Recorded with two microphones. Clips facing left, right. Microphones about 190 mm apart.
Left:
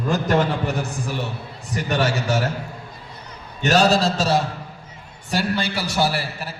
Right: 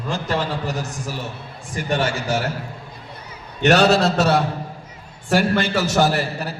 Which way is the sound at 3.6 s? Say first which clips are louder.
Right 2 dB; 70° right (ahead or behind).